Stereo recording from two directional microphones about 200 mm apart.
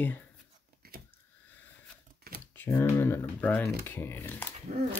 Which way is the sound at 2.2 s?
50° right (ahead or behind).